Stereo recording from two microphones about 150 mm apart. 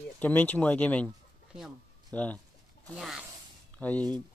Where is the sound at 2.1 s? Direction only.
10° left (ahead or behind).